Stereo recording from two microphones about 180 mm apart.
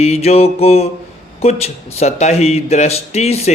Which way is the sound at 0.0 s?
35° left (ahead or behind).